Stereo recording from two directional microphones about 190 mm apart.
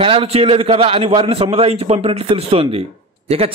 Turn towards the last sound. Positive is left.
turn(degrees=-30)  # may be behind; listen again after turning